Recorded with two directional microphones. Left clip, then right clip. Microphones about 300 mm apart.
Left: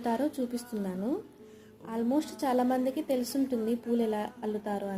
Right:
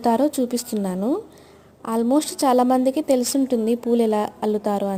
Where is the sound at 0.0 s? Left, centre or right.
Right.